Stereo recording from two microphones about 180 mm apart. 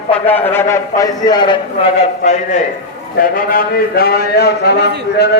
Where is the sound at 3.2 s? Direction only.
50° left (ahead or behind).